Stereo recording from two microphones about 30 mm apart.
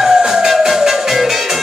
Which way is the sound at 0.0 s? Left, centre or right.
Centre.